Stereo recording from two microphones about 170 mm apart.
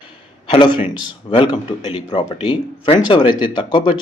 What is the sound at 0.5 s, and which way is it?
A man's voice, 30° left (ahead or behind).